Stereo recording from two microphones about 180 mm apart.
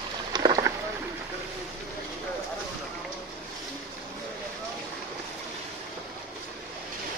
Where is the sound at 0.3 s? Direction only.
25° right (ahead or behind).